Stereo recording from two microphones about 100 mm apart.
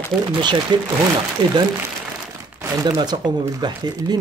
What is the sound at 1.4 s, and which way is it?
Speech, 40° right (ahead or behind).